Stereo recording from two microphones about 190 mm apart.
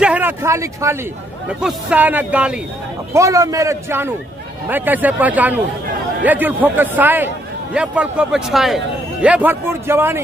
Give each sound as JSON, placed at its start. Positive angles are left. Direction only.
{"t": 0.0, "sound": "a man's voice", "side_deg": -10}